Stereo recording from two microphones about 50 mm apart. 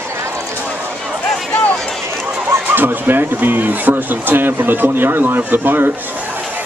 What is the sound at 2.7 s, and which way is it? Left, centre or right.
Speech, right.